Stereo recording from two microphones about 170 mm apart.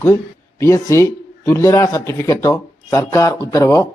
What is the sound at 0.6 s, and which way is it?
Speech, 15° left (ahead or behind).